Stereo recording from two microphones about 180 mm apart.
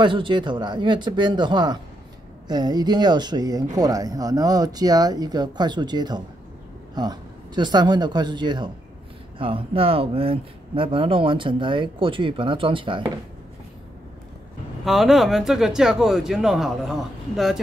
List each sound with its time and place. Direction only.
0.0 s speech: 25° right (ahead or behind)
14.9 s speech: centre (ahead or behind)